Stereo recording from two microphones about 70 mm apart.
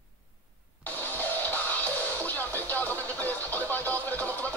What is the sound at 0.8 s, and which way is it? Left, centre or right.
Music, left.